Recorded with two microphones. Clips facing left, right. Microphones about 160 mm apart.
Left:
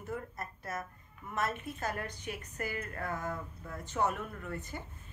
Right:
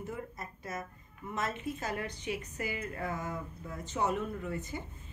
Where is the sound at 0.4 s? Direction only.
20° right (ahead or behind).